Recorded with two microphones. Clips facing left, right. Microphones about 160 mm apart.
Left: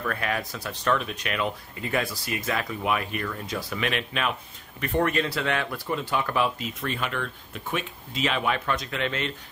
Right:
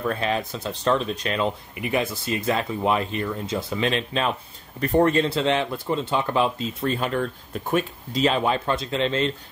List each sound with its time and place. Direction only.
0.0 s speech: 25° right (ahead or behind)
1.8 s speech: 20° right (ahead or behind)